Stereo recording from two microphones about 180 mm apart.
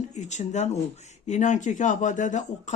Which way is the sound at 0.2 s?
40° left (ahead or behind).